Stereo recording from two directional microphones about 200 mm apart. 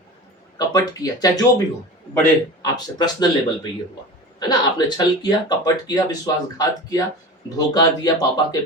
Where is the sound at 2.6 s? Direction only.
20° left (ahead or behind).